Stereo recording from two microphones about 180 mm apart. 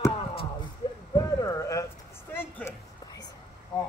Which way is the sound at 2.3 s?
15° left (ahead or behind).